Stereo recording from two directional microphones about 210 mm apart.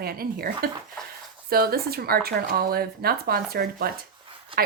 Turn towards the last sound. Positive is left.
turn(degrees=-25)  # may be behind; listen again after turning